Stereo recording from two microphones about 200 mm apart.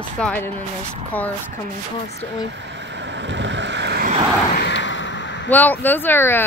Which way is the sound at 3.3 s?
65° right (ahead or behind).